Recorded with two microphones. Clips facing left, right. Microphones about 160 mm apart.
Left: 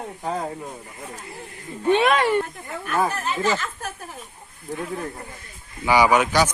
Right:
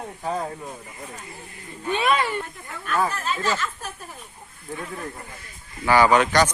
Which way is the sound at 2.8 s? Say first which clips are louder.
Left 1 dB; 15° left (ahead or behind).